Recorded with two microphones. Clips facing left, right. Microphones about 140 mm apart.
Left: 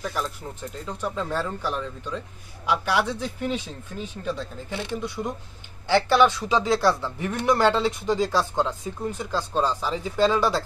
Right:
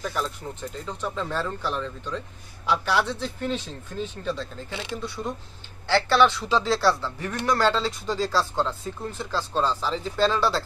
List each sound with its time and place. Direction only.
0.0 s speech: 5° left (ahead or behind)
5.9 s speech: 15° left (ahead or behind)